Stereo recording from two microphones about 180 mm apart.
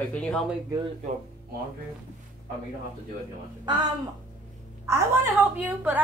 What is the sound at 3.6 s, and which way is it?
Speech, 25° right (ahead or behind).